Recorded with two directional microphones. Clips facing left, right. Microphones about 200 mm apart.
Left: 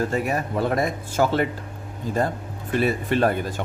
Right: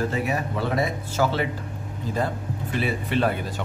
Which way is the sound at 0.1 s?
45° left (ahead or behind).